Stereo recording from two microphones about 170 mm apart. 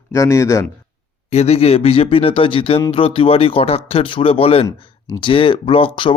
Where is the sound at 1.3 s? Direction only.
35° left (ahead or behind).